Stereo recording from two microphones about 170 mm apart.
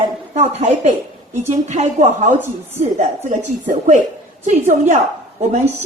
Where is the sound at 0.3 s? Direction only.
45° right (ahead or behind).